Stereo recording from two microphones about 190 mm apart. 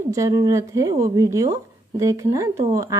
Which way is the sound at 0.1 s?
20° right (ahead or behind).